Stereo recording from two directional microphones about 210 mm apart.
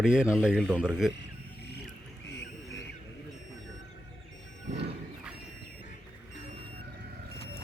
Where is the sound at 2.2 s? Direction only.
55° left (ahead or behind).